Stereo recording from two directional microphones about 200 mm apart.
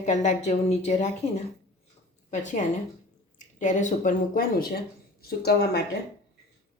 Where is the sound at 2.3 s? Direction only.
35° left (ahead or behind); by 5.9 s 55° left (ahead or behind).